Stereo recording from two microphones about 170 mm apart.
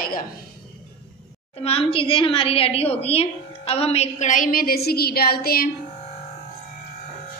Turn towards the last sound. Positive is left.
turn(degrees=65)  # may be behind; listen again after turning